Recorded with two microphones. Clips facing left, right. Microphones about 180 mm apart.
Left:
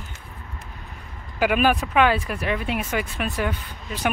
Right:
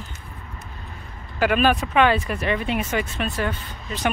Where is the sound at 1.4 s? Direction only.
10° left (ahead or behind).